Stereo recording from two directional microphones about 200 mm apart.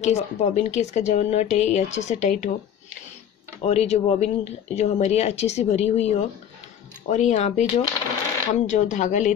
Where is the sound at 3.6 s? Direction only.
30° left (ahead or behind).